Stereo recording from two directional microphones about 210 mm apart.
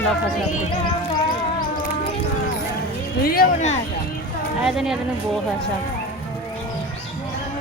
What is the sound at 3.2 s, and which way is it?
Speech, 45° left (ahead or behind).